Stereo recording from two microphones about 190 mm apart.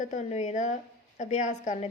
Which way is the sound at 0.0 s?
40° left (ahead or behind).